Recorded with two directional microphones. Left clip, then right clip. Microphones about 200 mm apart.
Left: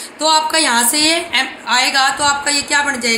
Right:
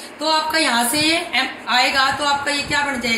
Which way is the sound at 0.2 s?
50° left (ahead or behind).